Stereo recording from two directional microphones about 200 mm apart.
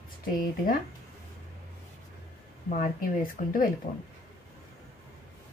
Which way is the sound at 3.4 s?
40° left (ahead or behind).